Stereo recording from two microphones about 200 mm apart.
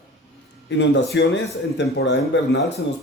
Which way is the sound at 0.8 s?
65° left (ahead or behind).